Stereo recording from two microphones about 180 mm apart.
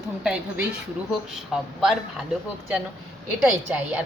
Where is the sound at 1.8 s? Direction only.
Centre (ahead or behind).